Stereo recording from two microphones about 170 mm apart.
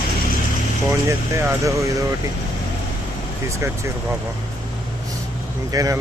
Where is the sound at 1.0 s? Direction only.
15° right (ahead or behind).